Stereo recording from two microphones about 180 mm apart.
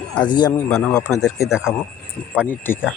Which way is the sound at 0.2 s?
25° left (ahead or behind).